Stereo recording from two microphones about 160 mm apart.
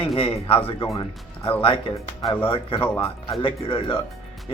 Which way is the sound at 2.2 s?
10° left (ahead or behind).